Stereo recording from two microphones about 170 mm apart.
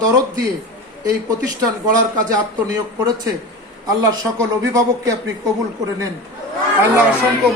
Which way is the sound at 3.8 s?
25° right (ahead or behind).